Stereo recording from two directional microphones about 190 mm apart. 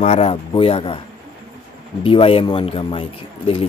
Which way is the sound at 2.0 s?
30° left (ahead or behind).